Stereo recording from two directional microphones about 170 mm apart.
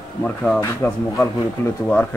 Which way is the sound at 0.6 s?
15° left (ahead or behind).